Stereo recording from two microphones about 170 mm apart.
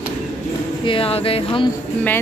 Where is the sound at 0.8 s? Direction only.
35° left (ahead or behind).